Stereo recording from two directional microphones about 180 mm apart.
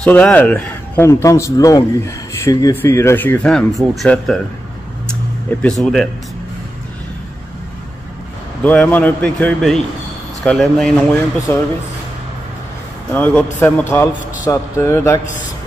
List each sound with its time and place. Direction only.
0.0 s speech: 10° left (ahead or behind)
5.6 s speech: centre (ahead or behind)
8.6 s speech: 10° left (ahead or behind)
13.1 s speech: 10° left (ahead or behind)